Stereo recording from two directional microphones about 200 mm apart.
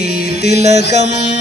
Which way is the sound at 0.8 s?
60° left (ahead or behind).